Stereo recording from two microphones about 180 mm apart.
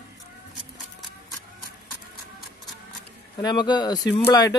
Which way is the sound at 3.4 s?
25° left (ahead or behind).